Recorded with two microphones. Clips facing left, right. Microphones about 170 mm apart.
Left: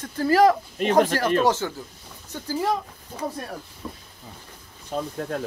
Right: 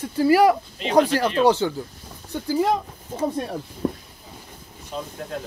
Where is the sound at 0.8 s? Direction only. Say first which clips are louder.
Even; 50° left (ahead or behind).